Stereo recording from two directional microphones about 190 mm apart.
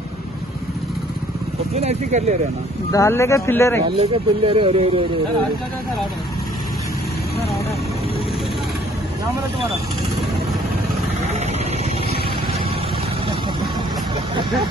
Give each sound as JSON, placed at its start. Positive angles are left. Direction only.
{"t": 1.8, "sound": "speech", "side_deg": -35}
{"t": 2.9, "sound": "speech", "side_deg": 15}
{"t": 4.0, "sound": "speech", "side_deg": -30}